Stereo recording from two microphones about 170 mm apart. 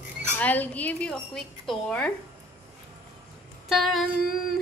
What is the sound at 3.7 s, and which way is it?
Speech, centre (ahead or behind).